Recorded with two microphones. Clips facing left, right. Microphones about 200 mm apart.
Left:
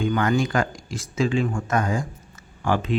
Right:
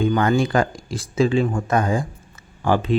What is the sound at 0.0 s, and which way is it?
Speech, 30° right (ahead or behind).